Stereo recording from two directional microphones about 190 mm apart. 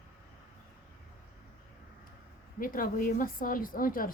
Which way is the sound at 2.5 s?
50° left (ahead or behind).